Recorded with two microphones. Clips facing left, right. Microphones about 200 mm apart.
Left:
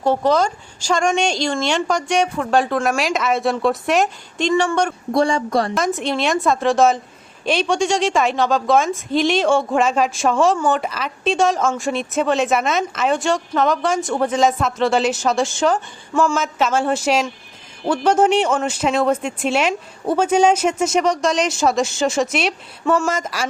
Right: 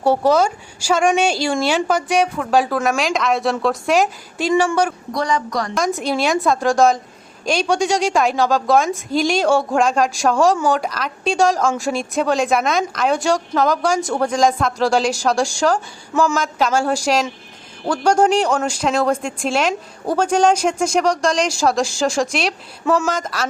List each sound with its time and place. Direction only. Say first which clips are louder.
0.0 s a man's voice: right 2 dB; 10° right (ahead or behind)
5.1 s speech: left 6 dB; 30° left (ahead or behind)
5.7 s a man's voice: right 1 dB; centre (ahead or behind)